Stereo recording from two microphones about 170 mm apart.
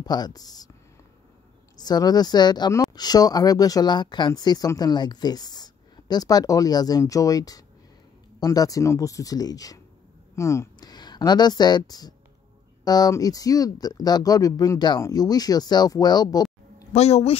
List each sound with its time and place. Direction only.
0.0 s speech: 25° left (ahead or behind)
1.8 s speech: 25° left (ahead or behind)
16.9 s speech: 40° left (ahead or behind)